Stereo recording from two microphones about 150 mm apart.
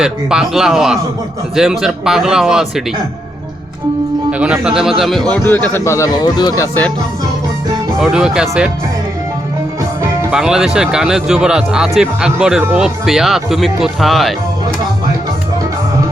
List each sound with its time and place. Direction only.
0.0 s speech: 5° right (ahead or behind)
4.3 s speech: 10° right (ahead or behind)
5.3 s speech: 10° left (ahead or behind)
7.9 s speech: 5° right (ahead or behind)
10.3 s speech: 5° right (ahead or behind)